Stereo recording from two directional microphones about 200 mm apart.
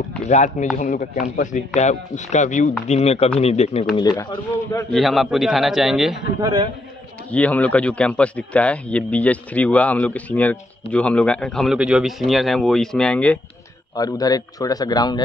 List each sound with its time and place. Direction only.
0.3 s speech: 40° left (ahead or behind)
3.9 s a man's voice: 20° left (ahead or behind)
4.9 s a man's voice: centre (ahead or behind)
6.4 s a man's voice: 20° right (ahead or behind)
7.2 s a man's voice: 5° left (ahead or behind)
13.9 s a man's voice: 20° left (ahead or behind)